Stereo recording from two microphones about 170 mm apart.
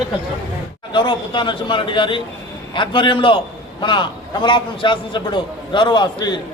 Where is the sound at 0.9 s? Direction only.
30° left (ahead or behind).